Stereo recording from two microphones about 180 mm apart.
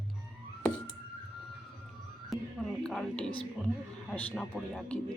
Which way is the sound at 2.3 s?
Centre (ahead or behind).